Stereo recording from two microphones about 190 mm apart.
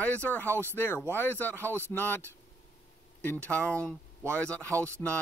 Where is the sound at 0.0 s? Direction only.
10° left (ahead or behind).